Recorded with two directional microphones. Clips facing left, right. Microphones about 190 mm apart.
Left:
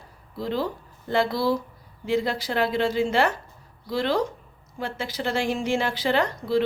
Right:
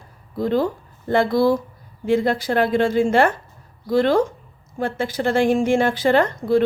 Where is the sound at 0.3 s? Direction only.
50° right (ahead or behind).